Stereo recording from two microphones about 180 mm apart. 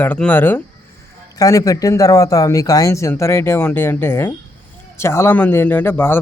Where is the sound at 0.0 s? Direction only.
10° left (ahead or behind).